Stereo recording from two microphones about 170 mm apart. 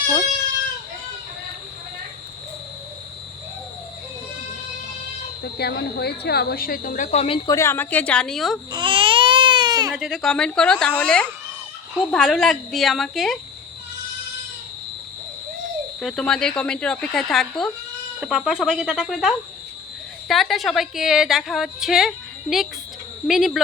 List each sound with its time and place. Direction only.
5.5 s speech: 70° left (ahead or behind); by 7.3 s 40° left (ahead or behind)
7.4 s a woman's voice: 15° left (ahead or behind)
8.7 s baby cry: 30° right (ahead or behind)
9.9 s a woman's voice: centre (ahead or behind)
16.0 s a woman's voice: centre (ahead or behind)